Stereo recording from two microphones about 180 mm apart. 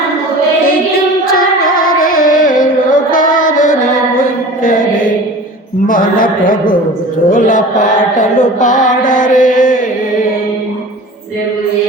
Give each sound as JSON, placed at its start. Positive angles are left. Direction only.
{"t": 1.3, "sound": "music", "side_deg": 50}
{"t": 4.2, "sound": "mantra", "side_deg": 45}
{"t": 5.9, "sound": "music", "side_deg": 50}